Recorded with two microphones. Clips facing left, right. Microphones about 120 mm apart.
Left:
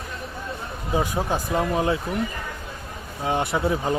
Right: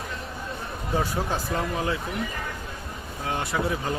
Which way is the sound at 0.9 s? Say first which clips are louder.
Left 3 dB; 15° left (ahead or behind).